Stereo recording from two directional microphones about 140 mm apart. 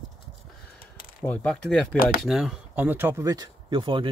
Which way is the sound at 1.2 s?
10° left (ahead or behind).